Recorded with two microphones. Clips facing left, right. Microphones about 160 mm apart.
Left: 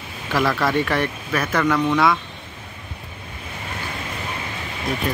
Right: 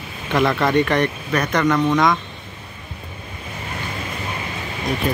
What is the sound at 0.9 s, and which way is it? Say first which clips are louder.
Speech: right 3 dB; 5° left (ahead or behind).